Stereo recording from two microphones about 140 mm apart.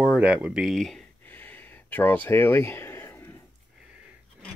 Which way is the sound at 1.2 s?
10° left (ahead or behind).